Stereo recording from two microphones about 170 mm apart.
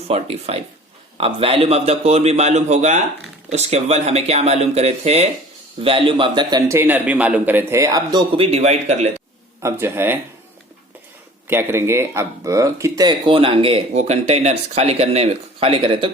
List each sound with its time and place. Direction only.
0.1 s a man's voice: 35° right (ahead or behind)
6.7 s a man's voice: 10° right (ahead or behind)
8.4 s speech: 35° right (ahead or behind)
9.6 s a man's voice: 15° right (ahead or behind)
11.4 s speech: 15° right (ahead or behind); by 16.0 s 30° right (ahead or behind)